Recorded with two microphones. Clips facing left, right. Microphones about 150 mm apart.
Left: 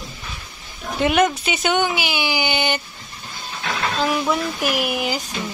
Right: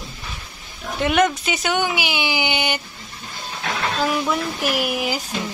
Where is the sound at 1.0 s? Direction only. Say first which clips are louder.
Left 1 dB; 5° left (ahead or behind); by 2.8 s 15° right (ahead or behind).